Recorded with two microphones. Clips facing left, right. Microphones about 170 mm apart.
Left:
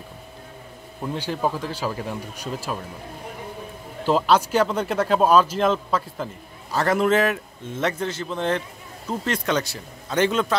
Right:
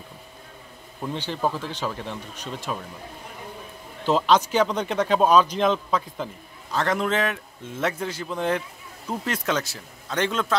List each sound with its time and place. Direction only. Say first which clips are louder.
1.0 s speech: left 1 dB; 5° left (ahead or behind)
4.0 s speech: left 1 dB; 5° left (ahead or behind)
7.8 s speech: left 2 dB; 10° right (ahead or behind)